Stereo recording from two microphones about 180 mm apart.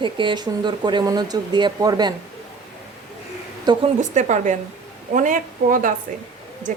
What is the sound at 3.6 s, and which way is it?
Speech, 25° right (ahead or behind).